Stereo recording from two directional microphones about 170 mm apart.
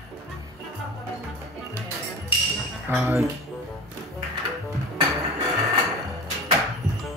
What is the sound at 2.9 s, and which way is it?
Speech, 15° right (ahead or behind).